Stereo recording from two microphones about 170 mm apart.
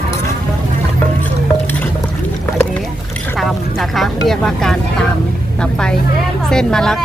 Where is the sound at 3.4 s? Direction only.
Centre (ahead or behind).